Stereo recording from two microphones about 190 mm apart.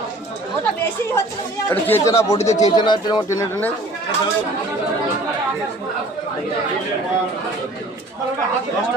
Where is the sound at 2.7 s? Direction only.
25° left (ahead or behind).